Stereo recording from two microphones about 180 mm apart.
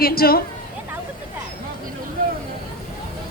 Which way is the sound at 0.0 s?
55° left (ahead or behind).